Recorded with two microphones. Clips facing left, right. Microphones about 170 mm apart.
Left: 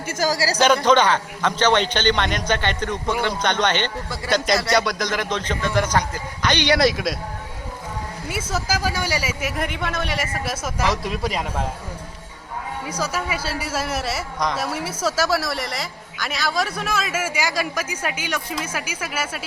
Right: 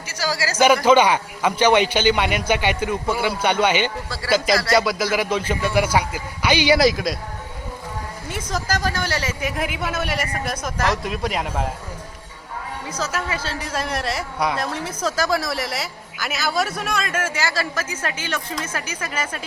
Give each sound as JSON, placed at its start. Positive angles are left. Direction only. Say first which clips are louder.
{"t": 0.1, "sound": "speech", "louder": "left 3 dB", "side_deg": 45}
{"t": 0.6, "sound": "a man's voice", "louder": "right 2 dB", "side_deg": -10}
{"t": 8.3, "sound": "speech", "louder": "even", "side_deg": 5}
{"t": 12.9, "sound": "a woman's voice", "louder": "even", "side_deg": 10}